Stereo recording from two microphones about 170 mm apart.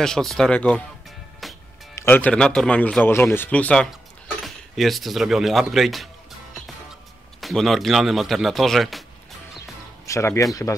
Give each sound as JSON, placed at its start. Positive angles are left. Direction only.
{"t": 0.0, "sound": "speech", "side_deg": 0}
{"t": 1.4, "sound": "music", "side_deg": 0}
{"t": 2.0, "sound": "speech", "side_deg": 10}
{"t": 7.3, "sound": "speech", "side_deg": 0}
{"t": 10.0, "sound": "speech", "side_deg": 15}